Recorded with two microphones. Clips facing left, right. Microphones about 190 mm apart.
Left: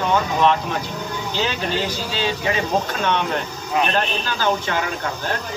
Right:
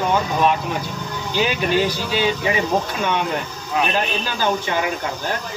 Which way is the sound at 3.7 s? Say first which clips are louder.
Even; 5° right (ahead or behind).